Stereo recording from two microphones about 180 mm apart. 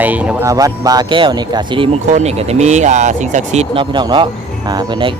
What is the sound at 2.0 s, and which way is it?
Speech, 40° right (ahead or behind).